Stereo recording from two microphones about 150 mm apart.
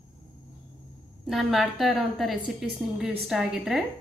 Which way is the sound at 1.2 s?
Centre (ahead or behind).